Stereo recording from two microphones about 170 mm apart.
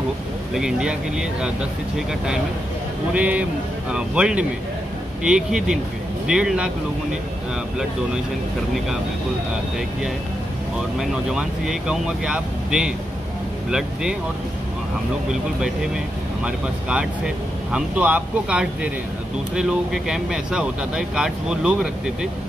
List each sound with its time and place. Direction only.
0.6 s speech: 5° right (ahead or behind)
3.1 s speech: 5° right (ahead or behind)
11.0 s speech: 5° right (ahead or behind)
16.4 s speech: 5° right (ahead or behind)